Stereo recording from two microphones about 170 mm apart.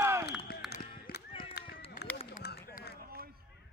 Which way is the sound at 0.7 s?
65° left (ahead or behind).